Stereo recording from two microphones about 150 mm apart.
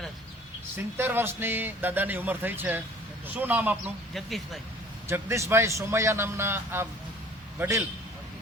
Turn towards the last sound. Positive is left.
turn(degrees=-15)  # may be behind; listen again after turning